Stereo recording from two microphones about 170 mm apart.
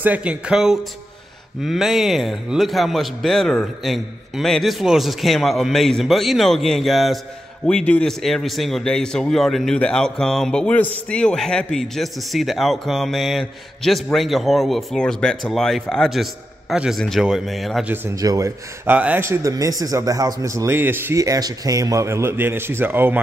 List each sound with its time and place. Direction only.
0.0 s a man's voice: 10° right (ahead or behind)
18.0 s speech: 20° right (ahead or behind)
18.9 s a man's voice: 10° right (ahead or behind)